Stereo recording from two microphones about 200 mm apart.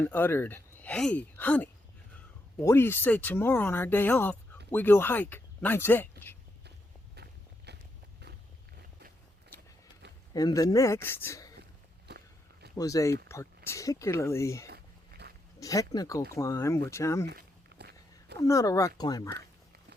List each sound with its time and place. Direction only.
0.0 s speech: 10° left (ahead or behind)
7.2 s walk: 55° right (ahead or behind)
10.3 s speech: 15° left (ahead or behind)
12.7 s speech: 15° left (ahead or behind)
14.7 s a sound: 55° right (ahead or behind)
15.6 s speech: 15° left (ahead or behind)
17.2 s a sound: 55° right (ahead or behind)
18.3 s speech: 15° left (ahead or behind)